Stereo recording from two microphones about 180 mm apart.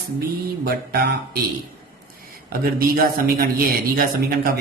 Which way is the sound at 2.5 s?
55° right (ahead or behind).